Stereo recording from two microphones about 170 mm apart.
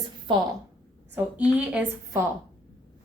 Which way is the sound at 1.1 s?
10° right (ahead or behind).